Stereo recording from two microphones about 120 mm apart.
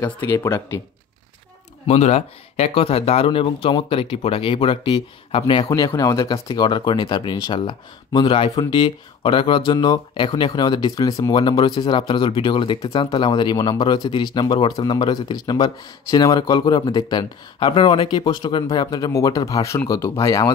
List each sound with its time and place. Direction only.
0.3 s speech: 25° left (ahead or behind)
1.9 s speech: 65° left (ahead or behind); by 20.5 s 25° left (ahead or behind)